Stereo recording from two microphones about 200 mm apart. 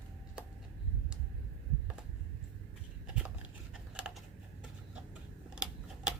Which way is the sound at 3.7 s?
5° right (ahead or behind).